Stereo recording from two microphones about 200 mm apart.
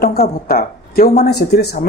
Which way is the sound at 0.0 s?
50° left (ahead or behind).